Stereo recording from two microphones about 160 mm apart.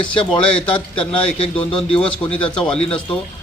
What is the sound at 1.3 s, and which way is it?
Speech, 30° left (ahead or behind).